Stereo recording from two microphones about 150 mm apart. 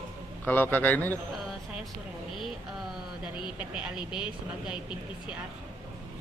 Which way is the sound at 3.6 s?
5° right (ahead or behind).